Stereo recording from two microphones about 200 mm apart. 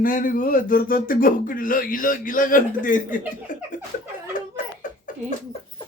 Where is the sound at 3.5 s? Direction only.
40° left (ahead or behind).